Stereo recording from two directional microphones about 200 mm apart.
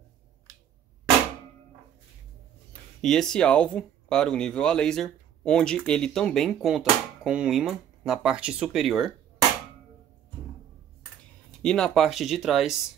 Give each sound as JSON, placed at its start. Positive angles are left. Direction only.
{"t": 3.0, "sound": "speech", "side_deg": 5}
{"t": 11.6, "sound": "speech", "side_deg": 5}